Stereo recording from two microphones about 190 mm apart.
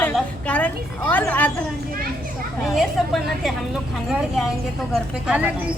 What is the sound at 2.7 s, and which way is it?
Speech, centre (ahead or behind).